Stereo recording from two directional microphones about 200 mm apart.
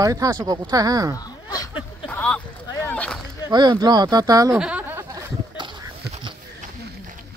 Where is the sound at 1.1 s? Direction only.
20° left (ahead or behind).